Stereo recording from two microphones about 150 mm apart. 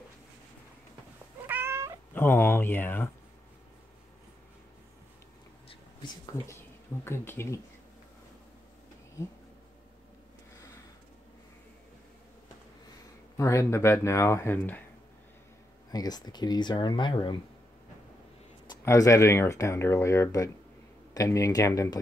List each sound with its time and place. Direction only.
1.5 s cat: 15° right (ahead or behind)
2.1 s speech: 15° left (ahead or behind)
7.1 s speech: 15° left (ahead or behind)
13.4 s speech: 20° left (ahead or behind)
15.9 s speech: 25° left (ahead or behind)
18.7 s speech: 20° left (ahead or behind)